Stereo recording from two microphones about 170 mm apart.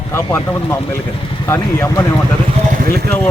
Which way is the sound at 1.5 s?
15° left (ahead or behind).